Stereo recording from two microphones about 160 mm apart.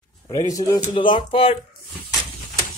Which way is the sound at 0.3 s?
20° left (ahead or behind).